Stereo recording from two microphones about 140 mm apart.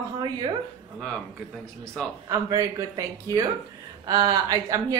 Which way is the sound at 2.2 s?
25° right (ahead or behind).